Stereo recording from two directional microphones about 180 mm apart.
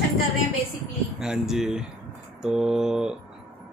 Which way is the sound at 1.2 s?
5° right (ahead or behind).